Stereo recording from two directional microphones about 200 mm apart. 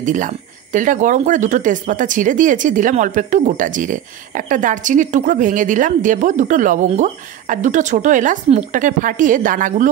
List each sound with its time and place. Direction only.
0.0 s speech: 40° right (ahead or behind)